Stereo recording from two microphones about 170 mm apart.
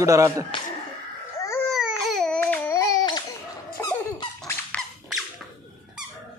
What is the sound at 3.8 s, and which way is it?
Squeak, 20° left (ahead or behind).